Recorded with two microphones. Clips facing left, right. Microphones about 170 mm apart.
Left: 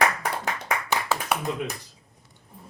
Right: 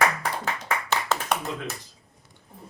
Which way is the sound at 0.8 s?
10° left (ahead or behind).